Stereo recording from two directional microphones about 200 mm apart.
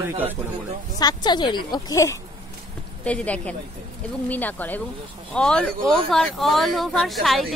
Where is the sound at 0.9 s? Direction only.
20° left (ahead or behind).